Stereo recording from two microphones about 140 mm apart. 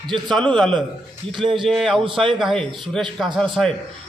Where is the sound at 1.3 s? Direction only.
35° right (ahead or behind).